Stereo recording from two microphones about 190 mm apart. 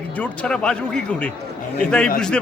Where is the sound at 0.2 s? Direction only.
5° left (ahead or behind).